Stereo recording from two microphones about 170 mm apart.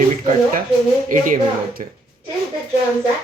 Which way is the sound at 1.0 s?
50° right (ahead or behind).